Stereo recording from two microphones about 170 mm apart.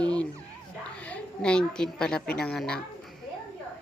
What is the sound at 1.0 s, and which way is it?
A woman's voice, 10° left (ahead or behind).